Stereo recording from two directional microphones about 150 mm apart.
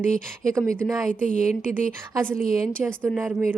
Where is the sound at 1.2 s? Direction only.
50° left (ahead or behind).